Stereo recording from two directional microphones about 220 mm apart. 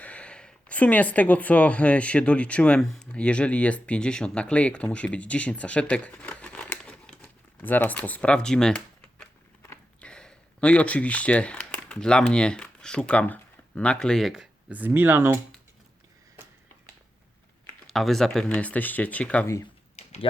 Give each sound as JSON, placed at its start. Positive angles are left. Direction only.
{"t": 0.0, "sound": "speech", "side_deg": 5}
{"t": 17.8, "sound": "speech", "side_deg": 0}
{"t": 20.0, "sound": "typing", "side_deg": 30}